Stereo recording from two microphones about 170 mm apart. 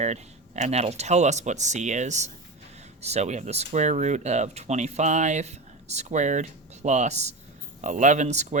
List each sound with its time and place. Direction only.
0.0 s speech: 45° right (ahead or behind)